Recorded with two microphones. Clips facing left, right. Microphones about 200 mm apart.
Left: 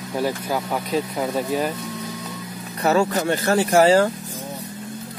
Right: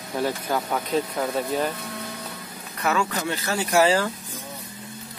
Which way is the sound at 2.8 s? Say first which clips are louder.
Left 6 dB; 35° left (ahead or behind).